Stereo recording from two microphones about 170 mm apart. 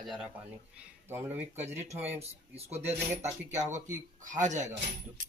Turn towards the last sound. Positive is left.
turn(degrees=-45)  # may be behind; listen again after turning